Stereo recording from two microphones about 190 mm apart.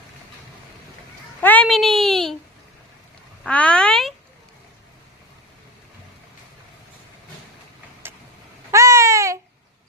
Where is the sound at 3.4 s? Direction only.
5° left (ahead or behind).